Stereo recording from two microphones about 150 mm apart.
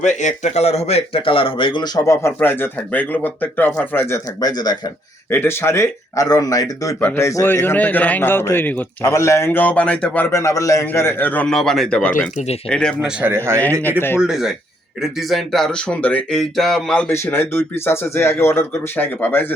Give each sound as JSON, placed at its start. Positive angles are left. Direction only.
{"t": 0.0, "sound": "a man's voice", "side_deg": 50}
{"t": 5.3, "sound": "a man's voice", "side_deg": 15}
{"t": 12.1, "sound": "speech", "side_deg": 50}
{"t": 12.6, "sound": "speech", "side_deg": 5}
{"t": 14.2, "sound": "speech", "side_deg": -5}
{"t": 17.1, "sound": "a man's voice", "side_deg": 15}